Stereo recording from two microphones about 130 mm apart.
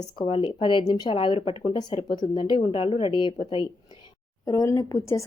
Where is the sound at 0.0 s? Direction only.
40° left (ahead or behind).